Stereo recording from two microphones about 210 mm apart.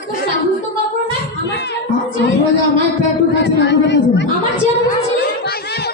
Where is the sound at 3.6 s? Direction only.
55° left (ahead or behind).